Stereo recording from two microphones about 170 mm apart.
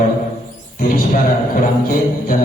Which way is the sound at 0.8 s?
55° left (ahead or behind).